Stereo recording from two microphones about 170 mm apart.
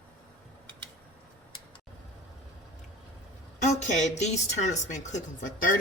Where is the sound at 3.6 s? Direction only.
45° left (ahead or behind).